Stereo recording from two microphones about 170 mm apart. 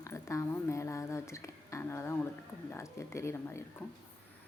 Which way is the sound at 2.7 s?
15° left (ahead or behind).